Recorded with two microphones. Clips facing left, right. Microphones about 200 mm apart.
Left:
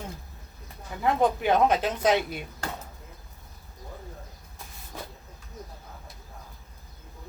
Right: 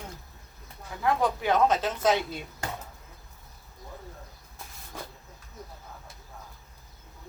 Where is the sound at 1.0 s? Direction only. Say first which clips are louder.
Left 2 dB; 20° left (ahead or behind).